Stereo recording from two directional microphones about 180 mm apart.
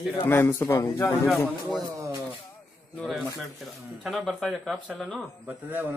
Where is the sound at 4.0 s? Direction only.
Centre (ahead or behind).